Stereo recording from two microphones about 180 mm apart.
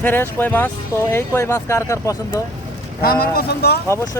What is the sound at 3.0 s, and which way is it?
Speech, 60° left (ahead or behind).